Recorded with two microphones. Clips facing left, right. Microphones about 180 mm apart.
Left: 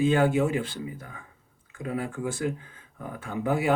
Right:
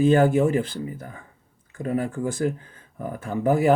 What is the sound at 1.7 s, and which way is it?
Speech, 40° right (ahead or behind).